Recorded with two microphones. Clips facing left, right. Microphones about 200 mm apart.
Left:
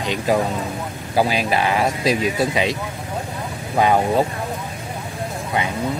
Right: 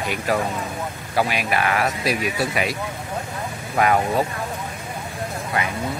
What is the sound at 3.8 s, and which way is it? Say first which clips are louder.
Speech: left 3 dB; 25° left (ahead or behind).